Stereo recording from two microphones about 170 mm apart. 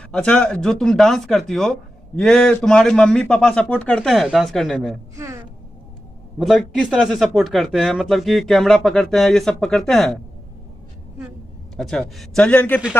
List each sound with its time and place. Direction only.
0.1 s speech: 5° left (ahead or behind)
5.1 s speech: 15° right (ahead or behind)
6.4 s speech: centre (ahead or behind)
11.7 s speech: centre (ahead or behind)